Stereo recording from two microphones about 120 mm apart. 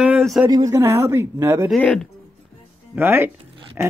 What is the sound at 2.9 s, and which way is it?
Speech, 20° right (ahead or behind).